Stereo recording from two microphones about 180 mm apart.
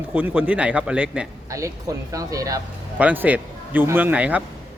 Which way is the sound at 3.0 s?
10° right (ahead or behind).